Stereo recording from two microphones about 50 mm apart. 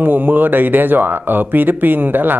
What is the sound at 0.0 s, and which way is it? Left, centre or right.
Speech, right.